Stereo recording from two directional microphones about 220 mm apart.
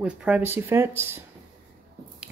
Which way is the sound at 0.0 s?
5° right (ahead or behind).